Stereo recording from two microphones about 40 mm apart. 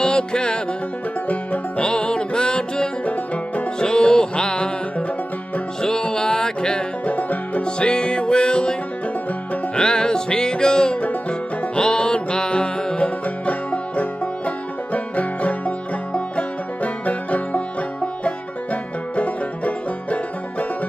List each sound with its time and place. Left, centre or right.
0.0 s music: left
1.8 s music: left
7.1 s music: left
7.6 s music: left
9.8 s music: centre
11.0 s music: left